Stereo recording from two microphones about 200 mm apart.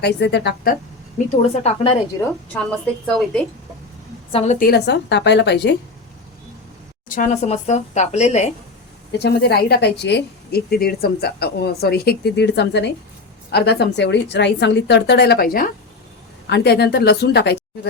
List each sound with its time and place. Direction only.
0.0 s a woman's voice: 60° left (ahead or behind)
1.6 s a woman's voice: 25° left (ahead or behind)
2.5 s a woman's voice: 5° left (ahead or behind)
4.3 s a woman's voice: 30° left (ahead or behind)
4.6 s a woman's voice: 55° left (ahead or behind)
7.1 s a woman's voice: 35° left (ahead or behind)
9.1 s a woman's voice: 55° left (ahead or behind)